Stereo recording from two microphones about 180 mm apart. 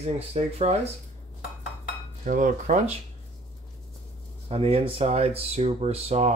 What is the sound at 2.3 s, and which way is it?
Speech, 45° right (ahead or behind).